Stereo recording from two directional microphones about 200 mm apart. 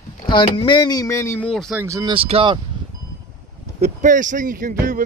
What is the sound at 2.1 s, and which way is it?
Speech, 25° right (ahead or behind).